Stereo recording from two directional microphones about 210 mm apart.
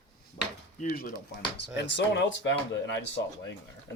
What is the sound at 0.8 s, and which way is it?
Speech, 40° left (ahead or behind).